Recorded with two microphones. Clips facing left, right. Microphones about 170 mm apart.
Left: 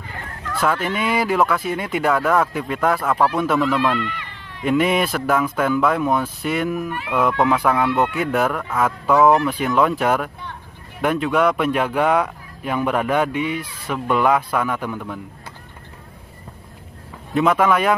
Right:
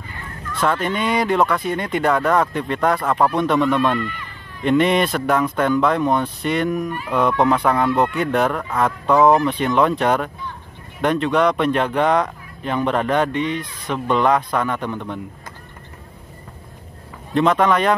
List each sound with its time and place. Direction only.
0.6 s speech: 5° left (ahead or behind)
4.0 s a sound: 80° left
4.6 s speech: 5° left (ahead or behind)
17.3 s speech: 5° left (ahead or behind)